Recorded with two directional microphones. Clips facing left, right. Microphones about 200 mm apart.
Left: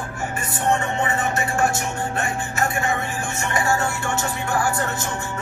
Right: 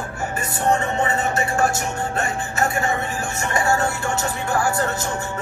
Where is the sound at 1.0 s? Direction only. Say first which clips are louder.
Right 1 dB; 25° right (ahead or behind).